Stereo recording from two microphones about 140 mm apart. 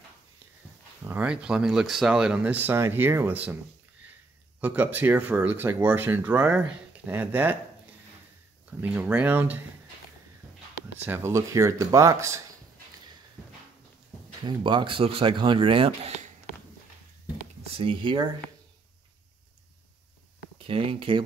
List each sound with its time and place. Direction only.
1.0 s speech: 10° right (ahead or behind)
4.6 s speech: 15° right (ahead or behind)
8.6 s speech: 10° right (ahead or behind)
11.1 s speech: 20° right (ahead or behind)
14.4 s speech: 35° right (ahead or behind)
17.7 s speech: 35° right (ahead or behind)
20.5 s speech: 40° right (ahead or behind)